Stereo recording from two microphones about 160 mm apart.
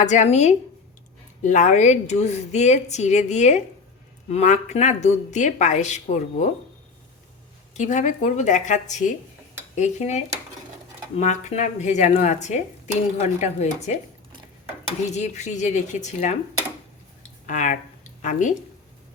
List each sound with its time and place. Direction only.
0.0 s speech: 45° left (ahead or behind)
7.7 s speech: 50° left (ahead or behind)
15.1 s speech: 45° left (ahead or behind)
17.4 s a woman's voice: 50° left (ahead or behind)